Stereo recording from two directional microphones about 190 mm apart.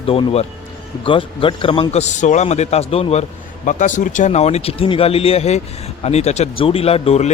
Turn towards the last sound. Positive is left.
turn(degrees=35)  # may be behind; listen again after turning